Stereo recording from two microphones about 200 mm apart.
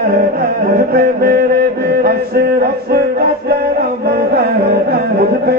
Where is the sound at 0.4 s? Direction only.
50° right (ahead or behind).